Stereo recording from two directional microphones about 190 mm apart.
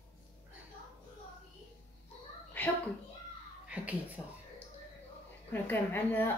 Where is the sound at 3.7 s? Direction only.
10° right (ahead or behind).